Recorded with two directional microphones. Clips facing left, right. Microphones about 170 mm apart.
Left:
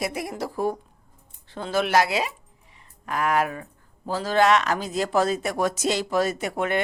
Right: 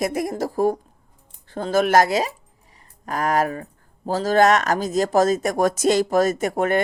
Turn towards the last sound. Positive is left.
turn(degrees=-45)  # may be behind; listen again after turning